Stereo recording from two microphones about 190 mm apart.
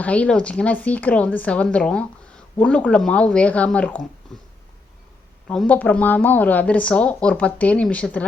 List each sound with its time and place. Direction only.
0.0 s speech: 5° left (ahead or behind)
4.3 s a sound: 5° left (ahead or behind)
5.5 s speech: 5° left (ahead or behind)